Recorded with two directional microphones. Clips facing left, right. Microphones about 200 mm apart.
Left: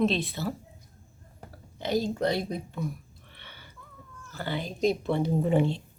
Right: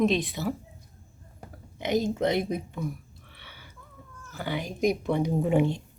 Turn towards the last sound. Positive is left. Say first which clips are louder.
# right 1 dB
turn(degrees=-15)  # may be behind; listen again after turning